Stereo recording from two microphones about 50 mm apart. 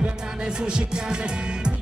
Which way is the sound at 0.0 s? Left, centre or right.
Centre.